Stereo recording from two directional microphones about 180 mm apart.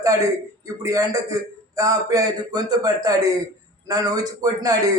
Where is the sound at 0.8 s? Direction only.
15° right (ahead or behind).